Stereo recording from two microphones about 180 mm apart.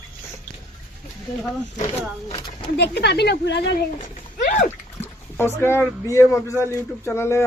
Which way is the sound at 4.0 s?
45° left (ahead or behind).